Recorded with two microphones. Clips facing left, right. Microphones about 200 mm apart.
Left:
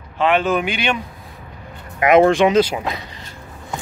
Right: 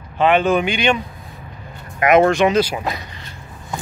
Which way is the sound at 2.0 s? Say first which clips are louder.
Left 1 dB; 25° left (ahead or behind).